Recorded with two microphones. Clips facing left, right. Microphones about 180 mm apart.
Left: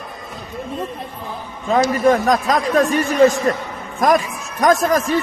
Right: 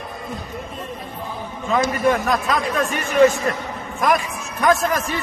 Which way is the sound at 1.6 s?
35° left (ahead or behind).